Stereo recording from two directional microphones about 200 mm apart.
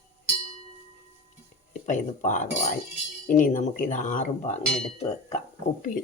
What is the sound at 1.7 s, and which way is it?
Speech, 40° left (ahead or behind).